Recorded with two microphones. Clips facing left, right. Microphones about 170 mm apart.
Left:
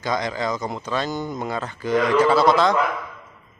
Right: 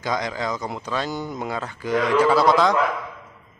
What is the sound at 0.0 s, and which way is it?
Speech, 10° right (ahead or behind).